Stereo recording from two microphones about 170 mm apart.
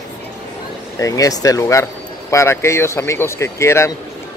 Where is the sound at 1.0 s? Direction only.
20° left (ahead or behind).